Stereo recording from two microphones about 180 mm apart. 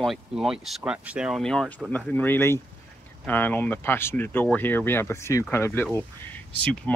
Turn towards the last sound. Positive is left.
turn(degrees=5)  # may be behind; listen again after turning